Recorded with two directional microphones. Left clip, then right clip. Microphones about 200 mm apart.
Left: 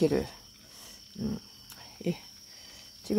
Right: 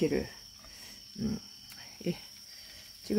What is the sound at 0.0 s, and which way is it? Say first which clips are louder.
Speech: left 4 dB; 15° left (ahead or behind).